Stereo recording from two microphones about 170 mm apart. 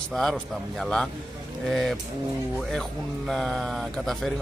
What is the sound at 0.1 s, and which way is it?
Speech, centre (ahead or behind).